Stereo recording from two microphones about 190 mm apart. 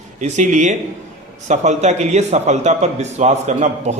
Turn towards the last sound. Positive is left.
turn(degrees=-35)  # may be behind; listen again after turning